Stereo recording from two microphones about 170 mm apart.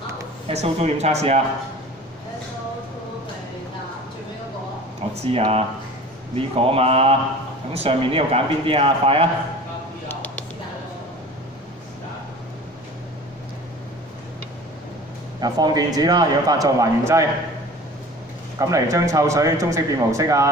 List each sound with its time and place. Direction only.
0.5 s a man's voice: 40° right (ahead or behind)
5.1 s a man's voice: 35° right (ahead or behind)
10.0 s a sound: 10° left (ahead or behind)
15.4 s a man's voice: 25° right (ahead or behind)
18.6 s a man's voice: 20° right (ahead or behind)